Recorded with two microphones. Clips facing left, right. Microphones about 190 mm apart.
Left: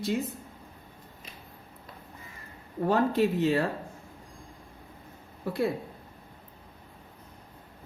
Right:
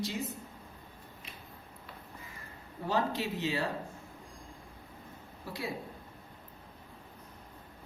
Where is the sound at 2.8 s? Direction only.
55° left (ahead or behind).